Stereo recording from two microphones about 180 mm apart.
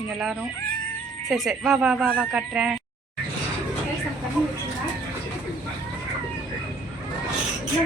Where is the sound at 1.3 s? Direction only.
Centre (ahead or behind).